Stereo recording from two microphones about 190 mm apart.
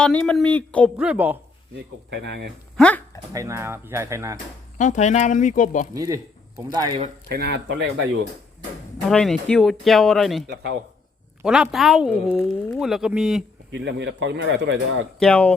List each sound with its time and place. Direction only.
0.0 s speech: 5° left (ahead or behind)
0.9 s speech: 5° right (ahead or behind)
2.0 s speech: 65° right (ahead or behind)
2.7 s a sound: 5° left (ahead or behind)
3.3 s speech: 15° right (ahead or behind)
4.8 s speech: 40° left (ahead or behind)
5.9 s speech: 15° right (ahead or behind)
7.3 s speech: 60° right (ahead or behind)
9.0 s speech: centre (ahead or behind)
11.4 s speech: 5° right (ahead or behind)
13.7 s speech: 70° right (ahead or behind)
15.2 s speech: 5° left (ahead or behind)